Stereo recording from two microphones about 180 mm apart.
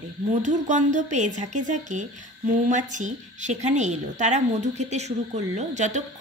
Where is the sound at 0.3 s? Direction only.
40° right (ahead or behind).